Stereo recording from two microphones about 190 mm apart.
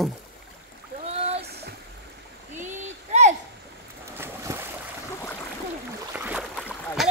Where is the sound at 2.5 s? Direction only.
40° right (ahead or behind).